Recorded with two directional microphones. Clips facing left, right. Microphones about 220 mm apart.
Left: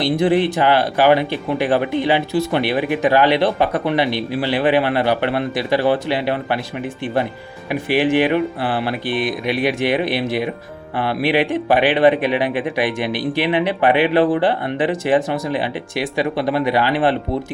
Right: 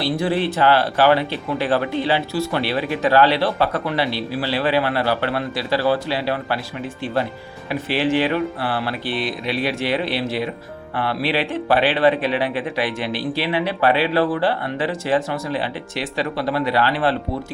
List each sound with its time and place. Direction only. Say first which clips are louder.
0.0 s speech: left 5 dB; 15° left (ahead or behind)